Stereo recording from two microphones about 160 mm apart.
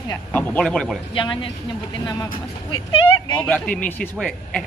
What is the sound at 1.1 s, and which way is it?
Speech, 30° left (ahead or behind).